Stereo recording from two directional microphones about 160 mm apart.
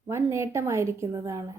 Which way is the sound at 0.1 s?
15° right (ahead or behind).